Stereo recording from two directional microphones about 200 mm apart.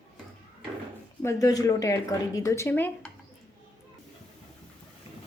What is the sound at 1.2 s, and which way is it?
A woman's voice, 15° left (ahead or behind).